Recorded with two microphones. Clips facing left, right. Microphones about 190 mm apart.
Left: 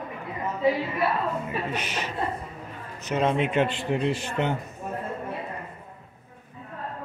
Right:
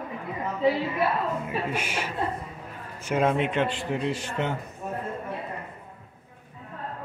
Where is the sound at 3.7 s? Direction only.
20° left (ahead or behind).